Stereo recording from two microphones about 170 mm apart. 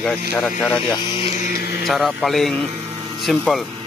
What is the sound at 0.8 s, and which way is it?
Speech, 25° left (ahead or behind).